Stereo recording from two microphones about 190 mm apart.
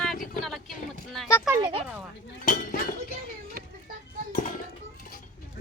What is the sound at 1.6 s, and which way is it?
Speech, 30° right (ahead or behind).